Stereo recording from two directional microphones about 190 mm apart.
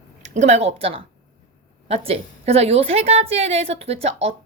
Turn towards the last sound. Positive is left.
turn(degrees=-30)  # may be behind; listen again after turning